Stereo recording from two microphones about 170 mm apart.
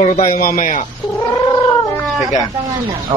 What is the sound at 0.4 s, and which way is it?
Speech, 55° left (ahead or behind).